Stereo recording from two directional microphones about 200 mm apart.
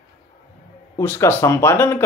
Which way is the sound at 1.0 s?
10° left (ahead or behind).